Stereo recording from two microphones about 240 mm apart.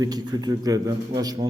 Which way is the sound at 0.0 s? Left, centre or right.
Centre.